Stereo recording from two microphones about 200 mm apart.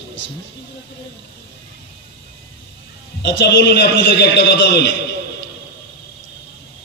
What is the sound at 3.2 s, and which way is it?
A man's voice, 60° left (ahead or behind).